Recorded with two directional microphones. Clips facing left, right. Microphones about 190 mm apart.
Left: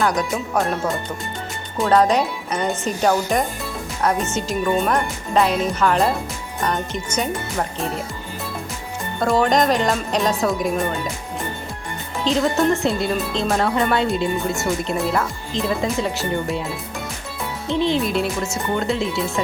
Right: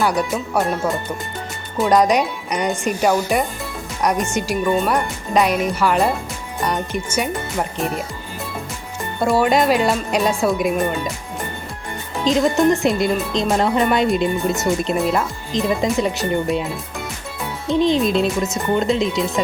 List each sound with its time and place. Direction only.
0.0 s speech: 10° right (ahead or behind)
1.9 s speech: 15° right (ahead or behind)
9.2 s speech: 10° right (ahead or behind)
12.2 s speech: 15° right (ahead or behind)
17.7 s speech: 15° right (ahead or behind)